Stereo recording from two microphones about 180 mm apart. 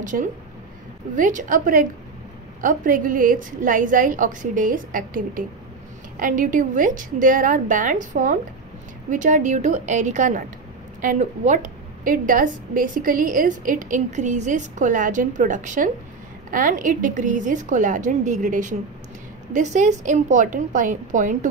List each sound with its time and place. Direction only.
0.1 s a woman's voice: 50° right (ahead or behind)